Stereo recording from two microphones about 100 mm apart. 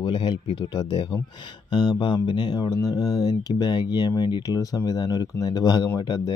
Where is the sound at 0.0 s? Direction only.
55° left (ahead or behind).